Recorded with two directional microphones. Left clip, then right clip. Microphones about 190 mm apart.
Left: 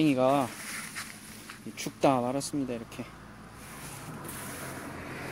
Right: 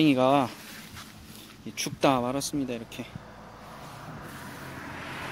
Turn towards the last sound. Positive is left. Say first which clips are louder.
# right 3 dB
turn(degrees=-15)  # may be behind; listen again after turning